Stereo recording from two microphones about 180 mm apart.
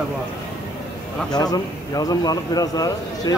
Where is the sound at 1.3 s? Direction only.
20° left (ahead or behind).